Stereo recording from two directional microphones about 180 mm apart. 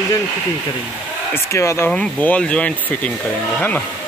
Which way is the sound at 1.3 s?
15° left (ahead or behind).